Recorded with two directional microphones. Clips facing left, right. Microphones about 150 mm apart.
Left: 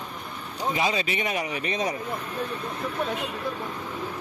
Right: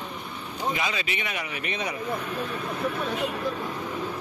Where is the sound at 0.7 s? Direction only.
35° left (ahead or behind).